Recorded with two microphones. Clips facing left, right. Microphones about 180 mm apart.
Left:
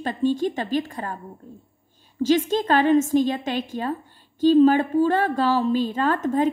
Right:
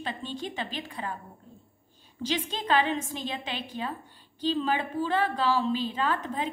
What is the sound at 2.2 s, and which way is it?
A woman's voice, 45° left (ahead or behind).